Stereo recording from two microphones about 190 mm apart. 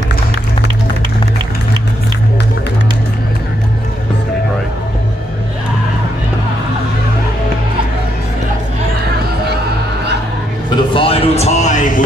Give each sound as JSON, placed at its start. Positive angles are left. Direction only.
{"t": 10.8, "sound": "music", "side_deg": 25}